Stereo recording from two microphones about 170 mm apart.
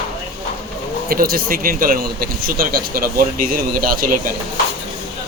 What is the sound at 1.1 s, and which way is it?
Speech, 60° right (ahead or behind).